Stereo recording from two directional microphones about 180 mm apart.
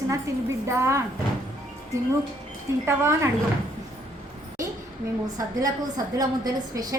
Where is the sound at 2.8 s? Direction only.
15° right (ahead or behind).